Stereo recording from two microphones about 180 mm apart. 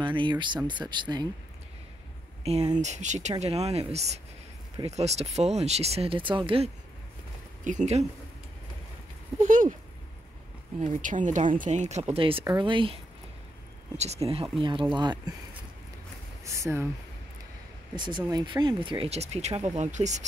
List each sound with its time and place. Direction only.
0.0 s speech: 25° right (ahead or behind)
2.7 s speech: 40° right (ahead or behind)
7.6 s speech: 40° right (ahead or behind)
9.4 s speech: 45° right (ahead or behind)
10.8 s speech: 45° right (ahead or behind); by 12.9 s 25° right (ahead or behind)
13.9 s speech: 35° right (ahead or behind)
16.4 s speech: 15° right (ahead or behind)
17.9 s speech: 25° right (ahead or behind); by 20.2 s 40° right (ahead or behind)